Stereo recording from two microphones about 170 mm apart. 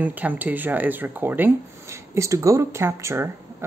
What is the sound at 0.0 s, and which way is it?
Speech, 10° right (ahead or behind).